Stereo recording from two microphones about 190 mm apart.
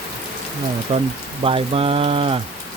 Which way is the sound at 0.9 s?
30° right (ahead or behind).